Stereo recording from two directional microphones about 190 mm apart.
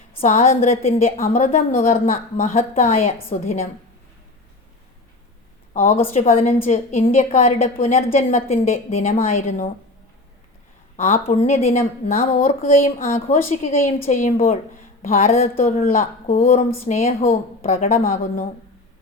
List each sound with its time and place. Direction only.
0.2 s a woman's voice: 45° left (ahead or behind)
6.1 s a woman's voice: 35° left (ahead or behind)
10.9 s a woman's voice: 40° left (ahead or behind)
15.5 s a woman's voice: 45° left (ahead or behind)
17.9 s speech: 50° left (ahead or behind)